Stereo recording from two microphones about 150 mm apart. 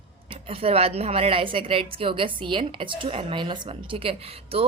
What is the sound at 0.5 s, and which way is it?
Speech, 40° right (ahead or behind).